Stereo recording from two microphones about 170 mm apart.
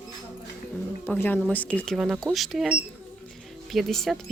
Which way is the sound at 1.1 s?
10° left (ahead or behind).